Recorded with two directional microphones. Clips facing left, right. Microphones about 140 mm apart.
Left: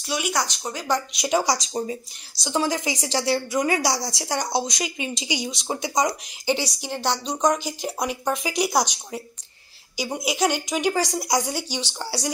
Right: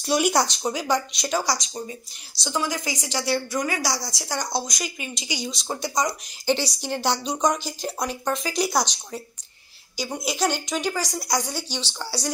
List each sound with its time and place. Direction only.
0.0 s speech: 40° right (ahead or behind)
0.6 s a woman's voice: 15° right (ahead or behind)
0.8 s speech: centre (ahead or behind)
1.2 s speech: 15° left (ahead or behind)
1.6 s speech: 35° left (ahead or behind)
2.5 s speech: 25° left (ahead or behind); by 7.0 s 10° left (ahead or behind)
7.0 s speech: 5° right (ahead or behind)
7.6 s speech: 15° left (ahead or behind)
10.9 s speech: 25° left (ahead or behind)